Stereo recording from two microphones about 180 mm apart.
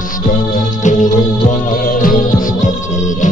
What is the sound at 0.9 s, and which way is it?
Music, 45° left (ahead or behind).